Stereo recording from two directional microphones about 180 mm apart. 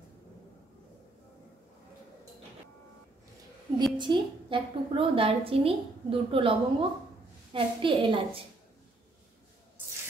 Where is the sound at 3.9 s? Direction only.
25° right (ahead or behind).